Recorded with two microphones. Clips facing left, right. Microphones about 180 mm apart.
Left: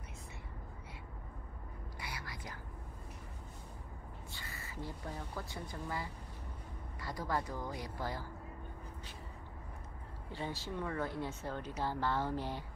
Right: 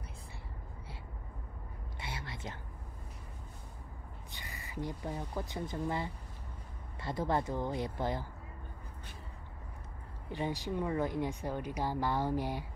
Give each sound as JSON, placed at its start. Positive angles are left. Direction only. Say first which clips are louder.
{"t": 2.0, "sound": "whispering", "louder": "right 4 dB", "side_deg": -25}
{"t": 4.3, "sound": "speech", "louder": "right 3 dB", "side_deg": -15}
{"t": 10.3, "sound": "speech", "louder": "right 6 dB", "side_deg": -15}